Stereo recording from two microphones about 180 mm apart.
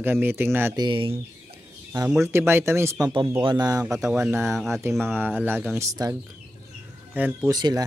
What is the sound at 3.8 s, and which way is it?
Speech, centre (ahead or behind).